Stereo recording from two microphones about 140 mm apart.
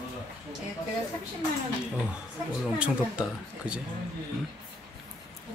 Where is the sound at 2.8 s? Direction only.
5° right (ahead or behind).